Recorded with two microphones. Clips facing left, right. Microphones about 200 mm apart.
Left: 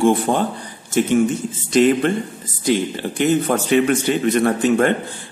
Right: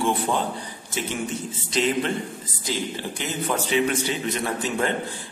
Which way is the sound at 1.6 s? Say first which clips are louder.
Left 9 dB; 50° left (ahead or behind).